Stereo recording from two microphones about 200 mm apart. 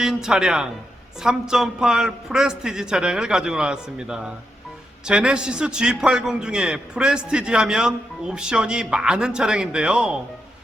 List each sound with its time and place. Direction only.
0.0 s a man's voice: 5° right (ahead or behind)